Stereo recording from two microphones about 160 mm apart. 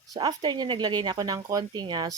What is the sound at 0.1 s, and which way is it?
Speech, 25° right (ahead or behind).